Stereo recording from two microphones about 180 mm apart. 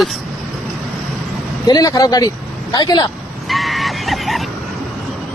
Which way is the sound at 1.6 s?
20° left (ahead or behind).